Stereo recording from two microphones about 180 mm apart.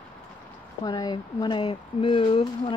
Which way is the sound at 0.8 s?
20° left (ahead or behind).